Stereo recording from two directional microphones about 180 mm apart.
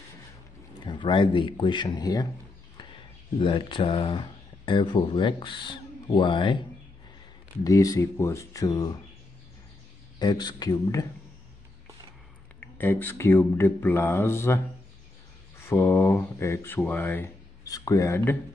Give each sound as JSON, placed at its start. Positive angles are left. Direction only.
{"t": 0.7, "sound": "speech", "side_deg": 25}
{"t": 2.8, "sound": "a sound", "side_deg": 25}
{"t": 3.3, "sound": "speech", "side_deg": 30}
{"t": 7.6, "sound": "speech", "side_deg": 20}
{"t": 10.1, "sound": "speech", "side_deg": 25}
{"t": 12.5, "sound": "speech", "side_deg": 10}
{"t": 15.6, "sound": "speech", "side_deg": 15}